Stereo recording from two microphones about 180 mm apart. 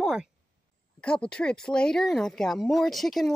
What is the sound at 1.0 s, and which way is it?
Speech, 5° left (ahead or behind).